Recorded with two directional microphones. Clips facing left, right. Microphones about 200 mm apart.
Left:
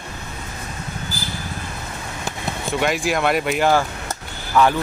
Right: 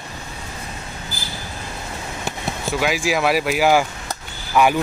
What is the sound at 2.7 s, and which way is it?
Speech, centre (ahead or behind).